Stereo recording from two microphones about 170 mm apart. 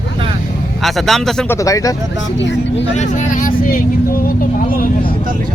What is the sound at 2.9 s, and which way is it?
Speech, 45° left (ahead or behind).